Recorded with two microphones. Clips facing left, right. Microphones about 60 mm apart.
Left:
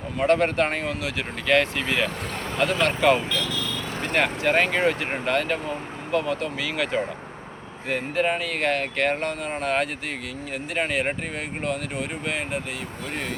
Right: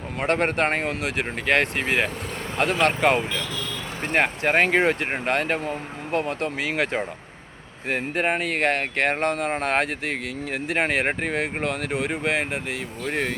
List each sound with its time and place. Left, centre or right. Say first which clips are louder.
0.2 s speech: left 2 dB; right